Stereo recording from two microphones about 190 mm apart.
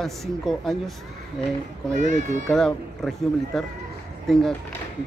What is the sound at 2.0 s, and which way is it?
Speech, 40° right (ahead or behind).